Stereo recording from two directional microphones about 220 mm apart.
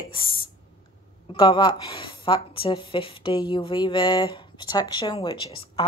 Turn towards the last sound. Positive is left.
turn(degrees=25)  # may be behind; listen again after turning